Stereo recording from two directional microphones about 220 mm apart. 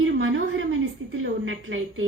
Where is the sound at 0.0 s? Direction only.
60° right (ahead or behind).